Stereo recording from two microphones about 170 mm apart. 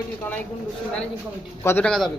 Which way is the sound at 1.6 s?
10° left (ahead or behind).